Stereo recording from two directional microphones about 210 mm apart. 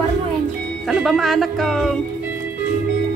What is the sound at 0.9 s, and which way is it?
Music, centre (ahead or behind).